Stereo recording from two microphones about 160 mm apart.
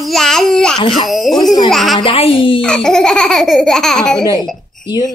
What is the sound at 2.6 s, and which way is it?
Speech, 5° left (ahead or behind).